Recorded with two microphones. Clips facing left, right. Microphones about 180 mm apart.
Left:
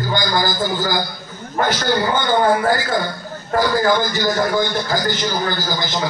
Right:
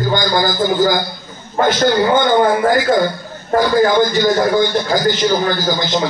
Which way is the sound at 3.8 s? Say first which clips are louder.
Right 5 dB; 20° right (ahead or behind).